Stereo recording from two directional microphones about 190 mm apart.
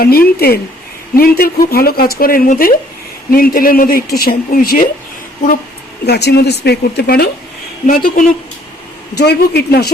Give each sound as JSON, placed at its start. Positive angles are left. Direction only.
{"t": 0.0, "sound": "speech", "side_deg": 55}
{"t": 6.1, "sound": "speech", "side_deg": 60}
{"t": 7.9, "sound": "speech", "side_deg": 45}
{"t": 9.1, "sound": "speech", "side_deg": 60}